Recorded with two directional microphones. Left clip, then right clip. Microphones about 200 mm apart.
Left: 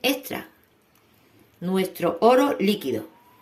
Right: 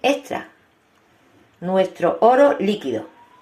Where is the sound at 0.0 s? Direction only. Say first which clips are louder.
Right 5 dB; 60° left (ahead or behind).